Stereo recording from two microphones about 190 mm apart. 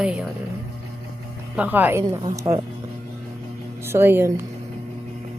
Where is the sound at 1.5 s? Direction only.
10° right (ahead or behind).